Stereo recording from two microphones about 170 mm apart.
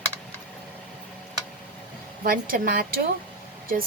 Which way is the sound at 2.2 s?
55° right (ahead or behind).